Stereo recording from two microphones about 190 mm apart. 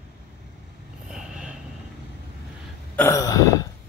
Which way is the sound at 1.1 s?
5° right (ahead or behind).